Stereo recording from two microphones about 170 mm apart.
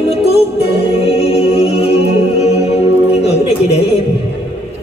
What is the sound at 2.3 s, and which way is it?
Music, 40° left (ahead or behind).